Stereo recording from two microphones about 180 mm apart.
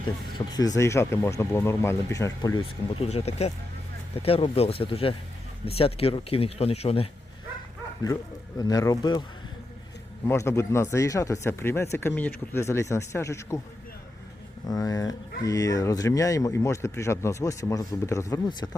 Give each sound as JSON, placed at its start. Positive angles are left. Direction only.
{"t": 0.3, "sound": "speech", "side_deg": 20}
{"t": 2.6, "sound": "speech", "side_deg": 35}
{"t": 8.0, "sound": "speech", "side_deg": 20}
{"t": 10.2, "sound": "speech", "side_deg": 15}
{"t": 14.7, "sound": "speech", "side_deg": 20}